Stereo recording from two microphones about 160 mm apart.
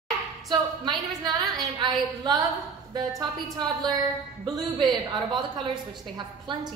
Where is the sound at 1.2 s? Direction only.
25° right (ahead or behind).